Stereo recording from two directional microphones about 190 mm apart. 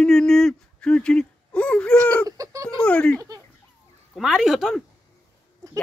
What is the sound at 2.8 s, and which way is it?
Speech, 5° left (ahead or behind).